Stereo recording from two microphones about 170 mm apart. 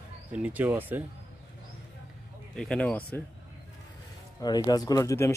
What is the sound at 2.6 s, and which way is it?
Speech, 5° left (ahead or behind).